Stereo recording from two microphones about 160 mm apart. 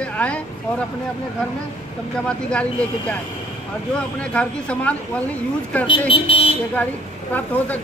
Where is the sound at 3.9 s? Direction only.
5° left (ahead or behind).